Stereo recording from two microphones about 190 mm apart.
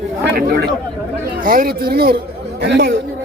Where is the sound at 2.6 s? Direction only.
65° right (ahead or behind).